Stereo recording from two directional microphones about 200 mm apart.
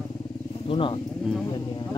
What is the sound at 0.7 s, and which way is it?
Speech, 25° left (ahead or behind).